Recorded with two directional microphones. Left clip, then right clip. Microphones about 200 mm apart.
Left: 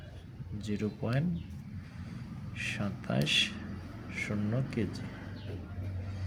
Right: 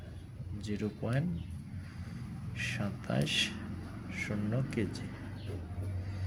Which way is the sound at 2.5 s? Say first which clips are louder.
Left 1 dB; 5° left (ahead or behind).